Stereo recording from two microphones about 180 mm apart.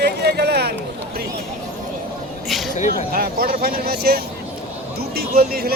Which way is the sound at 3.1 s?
55° right (ahead or behind).